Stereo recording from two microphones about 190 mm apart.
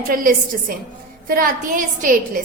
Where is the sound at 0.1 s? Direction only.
45° right (ahead or behind).